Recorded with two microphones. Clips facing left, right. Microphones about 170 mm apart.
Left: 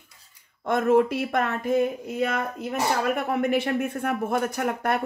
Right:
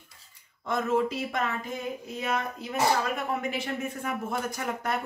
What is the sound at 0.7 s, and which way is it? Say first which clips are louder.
Speech: left 6 dB; 60° left (ahead or behind).